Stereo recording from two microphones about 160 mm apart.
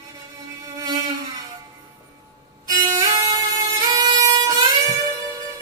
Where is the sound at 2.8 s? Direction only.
20° right (ahead or behind).